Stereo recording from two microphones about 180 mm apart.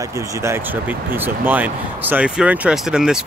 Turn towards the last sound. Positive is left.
turn(degrees=-5)  # may be behind; listen again after turning